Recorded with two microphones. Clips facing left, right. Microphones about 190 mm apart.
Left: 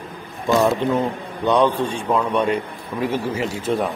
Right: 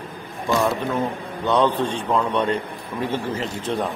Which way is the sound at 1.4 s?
15° left (ahead or behind).